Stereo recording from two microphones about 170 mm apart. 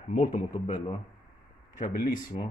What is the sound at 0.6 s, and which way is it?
Speech, 35° left (ahead or behind).